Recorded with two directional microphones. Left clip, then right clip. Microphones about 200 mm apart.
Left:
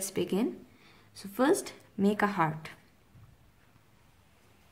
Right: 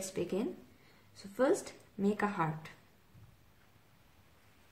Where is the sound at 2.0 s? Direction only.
40° left (ahead or behind).